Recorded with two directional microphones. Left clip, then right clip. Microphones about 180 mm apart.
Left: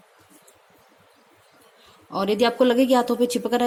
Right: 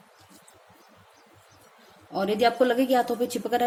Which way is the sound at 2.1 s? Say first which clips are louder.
Left 2 dB; 45° left (ahead or behind).